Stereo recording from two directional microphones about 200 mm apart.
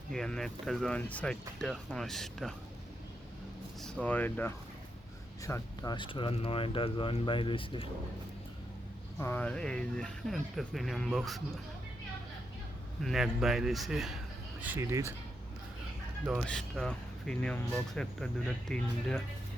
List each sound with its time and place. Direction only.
0.1 s speech: centre (ahead or behind)
3.8 s speech: centre (ahead or behind); by 7.9 s 25° left (ahead or behind)
9.1 s speech: 10° left (ahead or behind)
13.0 s speech: centre (ahead or behind)
14.6 s speech: 10° right (ahead or behind)
16.2 s speech: 5° left (ahead or behind)